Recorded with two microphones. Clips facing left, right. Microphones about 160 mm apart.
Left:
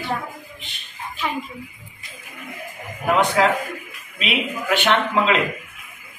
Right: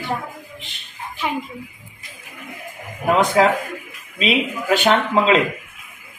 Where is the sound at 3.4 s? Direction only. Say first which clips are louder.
Right 3 dB; 30° right (ahead or behind).